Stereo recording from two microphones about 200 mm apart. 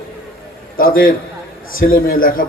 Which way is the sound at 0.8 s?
45° left (ahead or behind).